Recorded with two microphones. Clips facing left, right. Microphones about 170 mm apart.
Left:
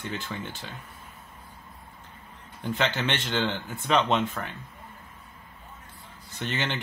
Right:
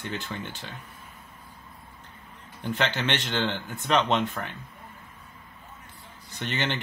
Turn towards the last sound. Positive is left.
turn(degrees=0)  # may be behind; listen again after turning